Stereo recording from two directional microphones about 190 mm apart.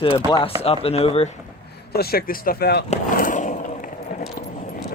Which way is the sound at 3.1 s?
45° left (ahead or behind).